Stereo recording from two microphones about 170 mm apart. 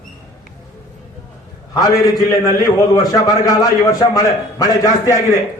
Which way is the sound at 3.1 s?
20° left (ahead or behind).